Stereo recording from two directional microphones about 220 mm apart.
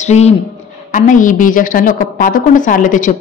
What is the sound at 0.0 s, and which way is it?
A woman's voice, 30° left (ahead or behind).